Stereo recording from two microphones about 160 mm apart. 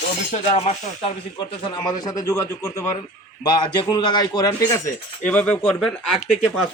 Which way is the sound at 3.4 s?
25° left (ahead or behind).